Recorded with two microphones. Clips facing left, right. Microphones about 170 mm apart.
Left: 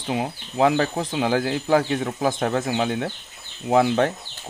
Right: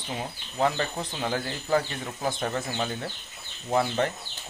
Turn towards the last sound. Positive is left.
turn(degrees=85)